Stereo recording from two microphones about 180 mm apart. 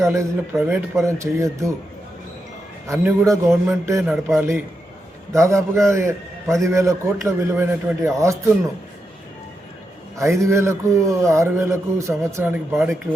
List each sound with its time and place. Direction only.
0.0 s speech: 15° right (ahead or behind)
2.8 s speech: 15° right (ahead or behind)
10.2 s speech: 15° right (ahead or behind)